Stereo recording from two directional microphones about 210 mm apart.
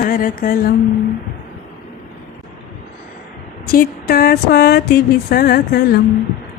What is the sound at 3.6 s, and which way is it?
Speech, 45° left (ahead or behind).